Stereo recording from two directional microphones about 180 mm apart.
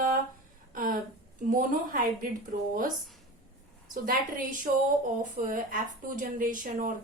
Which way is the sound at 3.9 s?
50° right (ahead or behind).